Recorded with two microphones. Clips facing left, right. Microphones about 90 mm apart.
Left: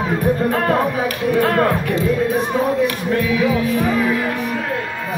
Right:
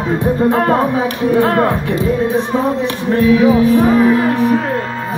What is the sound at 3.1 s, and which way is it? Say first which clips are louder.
Speech: right 10 dB; 30° right (ahead or behind).